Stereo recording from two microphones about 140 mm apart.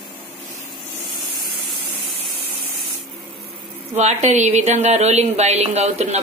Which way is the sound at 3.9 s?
55° right (ahead or behind).